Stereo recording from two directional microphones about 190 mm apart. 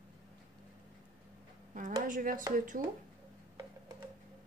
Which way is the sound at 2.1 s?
45° right (ahead or behind).